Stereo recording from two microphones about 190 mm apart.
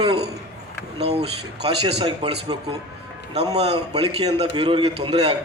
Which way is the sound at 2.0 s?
20° right (ahead or behind).